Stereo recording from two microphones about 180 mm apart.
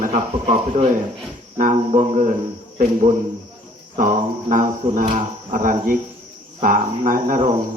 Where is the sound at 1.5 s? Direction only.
45° right (ahead or behind).